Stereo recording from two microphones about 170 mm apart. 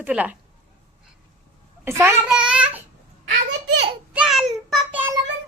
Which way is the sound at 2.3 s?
5° right (ahead or behind).